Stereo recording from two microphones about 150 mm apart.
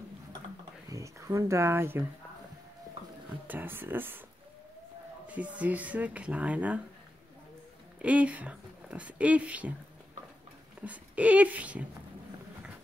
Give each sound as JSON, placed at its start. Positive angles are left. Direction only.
{"t": 0.8, "sound": "speech", "side_deg": -20}
{"t": 3.4, "sound": "speech", "side_deg": -15}
{"t": 5.2, "sound": "speech", "side_deg": -10}
{"t": 8.0, "sound": "speech", "side_deg": -10}
{"t": 10.8, "sound": "speech", "side_deg": -10}